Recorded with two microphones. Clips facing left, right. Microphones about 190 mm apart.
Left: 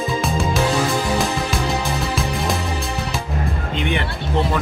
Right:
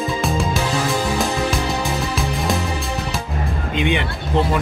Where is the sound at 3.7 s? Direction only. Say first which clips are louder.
Right 3 dB; 15° right (ahead or behind).